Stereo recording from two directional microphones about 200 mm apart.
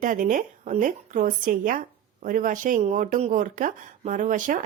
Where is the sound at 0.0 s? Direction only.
40° right (ahead or behind).